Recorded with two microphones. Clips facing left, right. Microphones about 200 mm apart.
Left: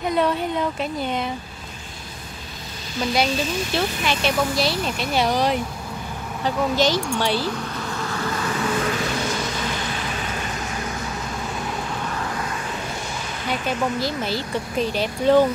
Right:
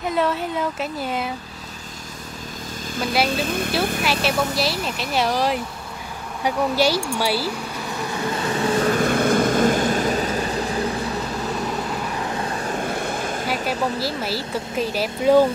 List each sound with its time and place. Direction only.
0.1 s speech: centre (ahead or behind)
3.3 s speech: 55° right (ahead or behind)
4.0 s speech: 5° right (ahead or behind)
6.4 s a sound: 10° right (ahead or behind); by 11.1 s 35° right (ahead or behind)
12.3 s vehicle: 30° right (ahead or behind); by 13.5 s 50° right (ahead or behind)
14.0 s speech: 5° right (ahead or behind)